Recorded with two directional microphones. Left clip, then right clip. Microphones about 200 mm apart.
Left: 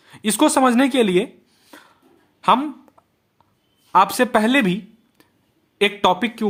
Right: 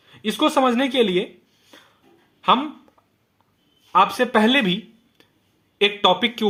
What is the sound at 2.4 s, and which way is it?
Speech, 30° left (ahead or behind).